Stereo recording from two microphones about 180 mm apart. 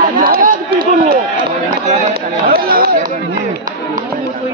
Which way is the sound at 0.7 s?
50° right (ahead or behind).